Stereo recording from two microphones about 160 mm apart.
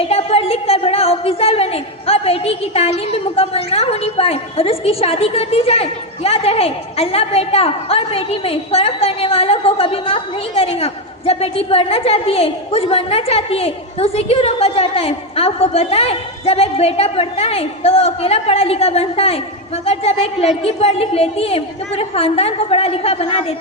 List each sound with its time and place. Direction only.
0.1 s a woman's voice: 40° left (ahead or behind)